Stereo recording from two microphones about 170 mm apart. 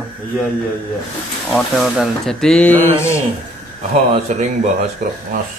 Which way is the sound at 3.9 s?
40° right (ahead or behind).